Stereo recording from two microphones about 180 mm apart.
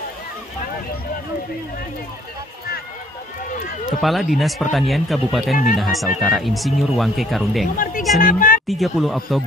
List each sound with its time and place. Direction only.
4.0 s speech: centre (ahead or behind)
7.6 s speech: 50° left (ahead or behind)
8.6 s speech: centre (ahead or behind)